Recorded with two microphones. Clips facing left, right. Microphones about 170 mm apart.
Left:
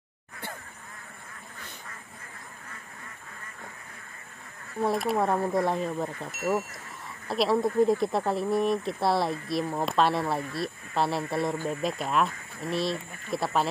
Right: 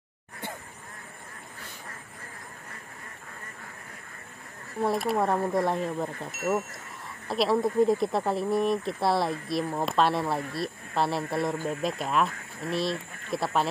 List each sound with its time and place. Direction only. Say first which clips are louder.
4.7 s speech: even; centre (ahead or behind)